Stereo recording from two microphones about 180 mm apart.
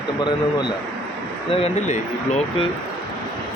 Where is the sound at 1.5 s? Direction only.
40° left (ahead or behind).